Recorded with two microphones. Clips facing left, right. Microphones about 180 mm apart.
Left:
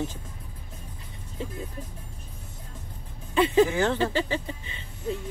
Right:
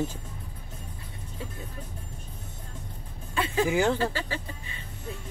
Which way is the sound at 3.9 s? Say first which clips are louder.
Left 4 dB; 20° left (ahead or behind).